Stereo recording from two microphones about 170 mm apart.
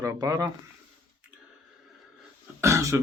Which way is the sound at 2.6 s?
15° right (ahead or behind).